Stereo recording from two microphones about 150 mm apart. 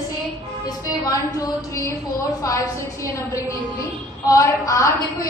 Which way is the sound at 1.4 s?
20° left (ahead or behind).